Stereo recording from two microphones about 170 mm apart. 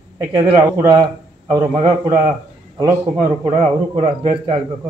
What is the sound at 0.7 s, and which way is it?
A man's voice, 25° right (ahead or behind).